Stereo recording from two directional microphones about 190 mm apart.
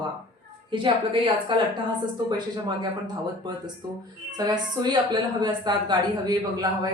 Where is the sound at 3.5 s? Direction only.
20° right (ahead or behind).